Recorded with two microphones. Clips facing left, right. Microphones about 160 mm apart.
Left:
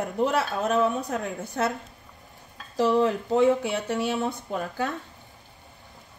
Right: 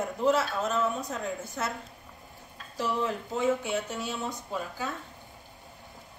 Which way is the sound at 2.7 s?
65° left (ahead or behind).